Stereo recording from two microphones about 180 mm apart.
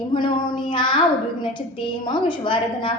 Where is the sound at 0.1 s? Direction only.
25° left (ahead or behind).